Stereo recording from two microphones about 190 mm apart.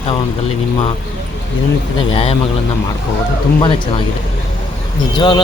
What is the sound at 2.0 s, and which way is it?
Speech, 30° left (ahead or behind).